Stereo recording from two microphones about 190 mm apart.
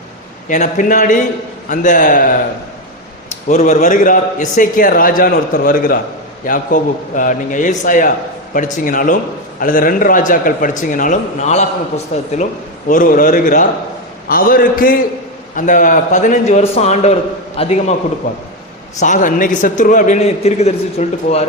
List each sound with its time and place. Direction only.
0.4 s a man's voice: 45° left (ahead or behind)
3.5 s a man's voice: 35° left (ahead or behind)
12.9 s a man's voice: 45° left (ahead or behind)
18.9 s a man's voice: 40° left (ahead or behind)